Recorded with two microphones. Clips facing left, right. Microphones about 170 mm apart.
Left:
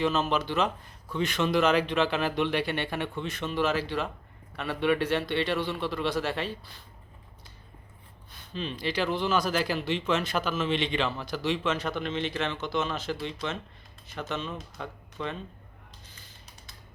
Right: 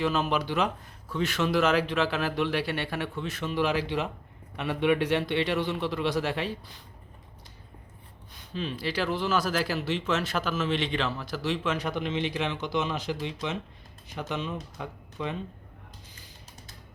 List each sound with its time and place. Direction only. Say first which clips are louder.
0.0 s a man's voice: even; 10° right (ahead or behind)
8.3 s a man's voice: right 1 dB; 10° right (ahead or behind)